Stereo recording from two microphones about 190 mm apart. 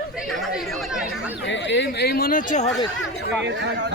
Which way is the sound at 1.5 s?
70° left (ahead or behind).